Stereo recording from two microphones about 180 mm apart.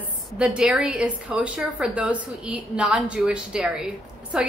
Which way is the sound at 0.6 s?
5° right (ahead or behind).